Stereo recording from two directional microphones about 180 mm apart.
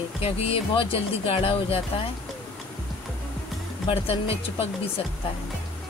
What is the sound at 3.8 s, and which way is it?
Speech, 35° left (ahead or behind).